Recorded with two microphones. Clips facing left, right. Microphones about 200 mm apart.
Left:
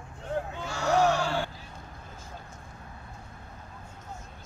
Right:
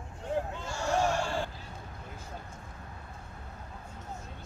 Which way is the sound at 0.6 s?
70° left (ahead or behind).